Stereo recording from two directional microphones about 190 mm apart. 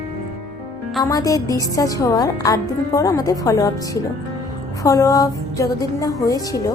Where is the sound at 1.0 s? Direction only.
20° left (ahead or behind).